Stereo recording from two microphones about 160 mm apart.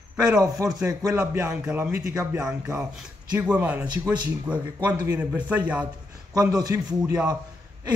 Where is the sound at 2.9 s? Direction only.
10° right (ahead or behind).